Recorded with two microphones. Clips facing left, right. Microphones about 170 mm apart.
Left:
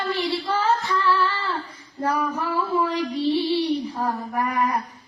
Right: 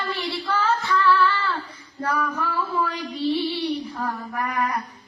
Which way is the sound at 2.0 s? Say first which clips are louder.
Left 1 dB; 20° left (ahead or behind).